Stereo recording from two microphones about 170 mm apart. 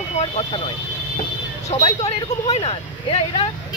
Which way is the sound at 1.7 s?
40° left (ahead or behind).